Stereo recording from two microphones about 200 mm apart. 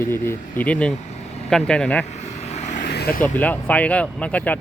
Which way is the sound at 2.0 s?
35° left (ahead or behind).